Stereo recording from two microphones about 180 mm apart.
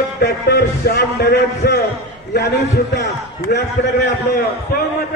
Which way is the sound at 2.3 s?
65° left (ahead or behind).